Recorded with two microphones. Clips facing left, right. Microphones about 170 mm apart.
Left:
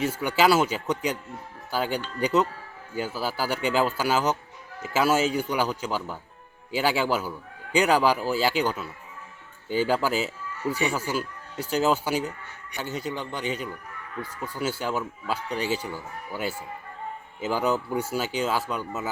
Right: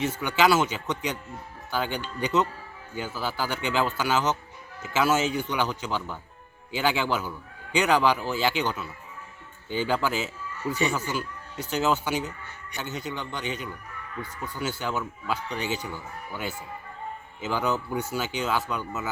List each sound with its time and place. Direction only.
0.0 s speech: 35° left (ahead or behind)
10.8 s speech: 10° left (ahead or behind)
11.7 s speech: 35° left (ahead or behind)
14.2 s speech: 10° left (ahead or behind)
14.8 s speech: 30° left (ahead or behind)
15.8 s speech: 5° left (ahead or behind)
17.5 s speech: 35° left (ahead or behind)